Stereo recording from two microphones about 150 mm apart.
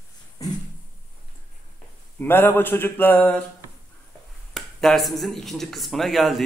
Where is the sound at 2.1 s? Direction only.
15° left (ahead or behind).